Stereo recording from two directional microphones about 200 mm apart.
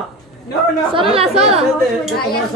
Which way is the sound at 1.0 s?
30° right (ahead or behind).